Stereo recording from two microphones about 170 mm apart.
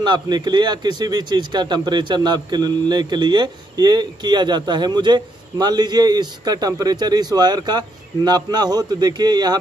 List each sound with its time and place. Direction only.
0.0 s speech: 25° right (ahead or behind)